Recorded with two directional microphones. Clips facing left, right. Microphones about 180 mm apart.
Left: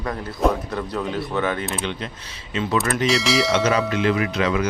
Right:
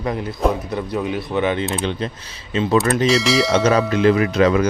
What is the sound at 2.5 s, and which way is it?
Speech, 30° right (ahead or behind).